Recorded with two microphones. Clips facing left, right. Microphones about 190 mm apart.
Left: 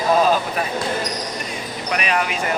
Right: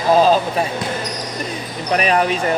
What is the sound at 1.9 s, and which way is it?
Speech, 35° right (ahead or behind).